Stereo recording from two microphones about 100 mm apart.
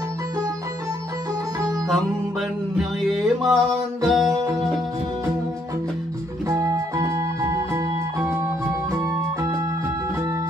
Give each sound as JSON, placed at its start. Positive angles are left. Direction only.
{"t": 2.8, "sound": "music", "side_deg": 0}
{"t": 6.5, "sound": "music", "side_deg": -35}